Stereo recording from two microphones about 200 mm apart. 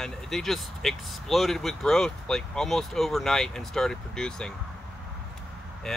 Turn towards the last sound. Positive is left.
turn(degrees=0)  # may be behind; listen again after turning